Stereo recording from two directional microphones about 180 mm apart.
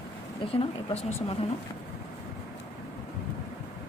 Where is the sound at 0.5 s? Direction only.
35° left (ahead or behind).